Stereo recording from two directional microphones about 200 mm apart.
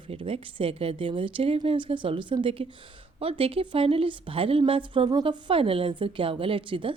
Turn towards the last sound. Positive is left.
turn(degrees=-25)  # may be behind; listen again after turning